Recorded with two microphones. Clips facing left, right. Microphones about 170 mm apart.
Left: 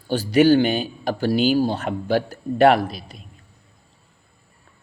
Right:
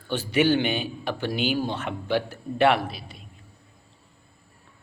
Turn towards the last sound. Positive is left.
turn(degrees=40)  # may be behind; listen again after turning